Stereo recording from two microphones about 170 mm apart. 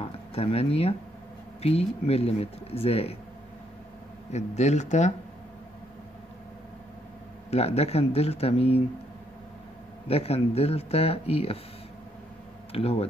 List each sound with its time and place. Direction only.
0.0 s speech: 35° left (ahead or behind)
4.3 s speech: 40° left (ahead or behind)
7.5 s speech: 35° left (ahead or behind)
10.0 s speech: 35° left (ahead or behind)
12.7 s speech: 35° left (ahead or behind)